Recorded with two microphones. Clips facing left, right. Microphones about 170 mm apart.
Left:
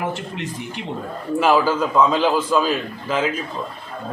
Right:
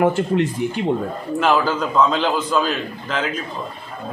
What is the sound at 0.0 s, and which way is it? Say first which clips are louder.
Speech: right 10 dB; 55° right (ahead or behind).